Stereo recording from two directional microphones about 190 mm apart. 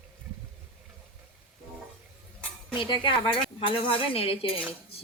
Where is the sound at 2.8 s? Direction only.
25° left (ahead or behind).